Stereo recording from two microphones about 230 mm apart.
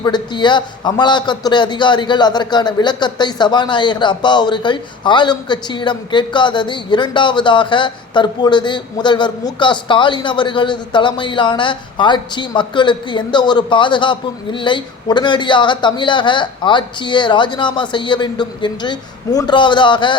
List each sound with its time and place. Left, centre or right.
0.0 s a man's voice: centre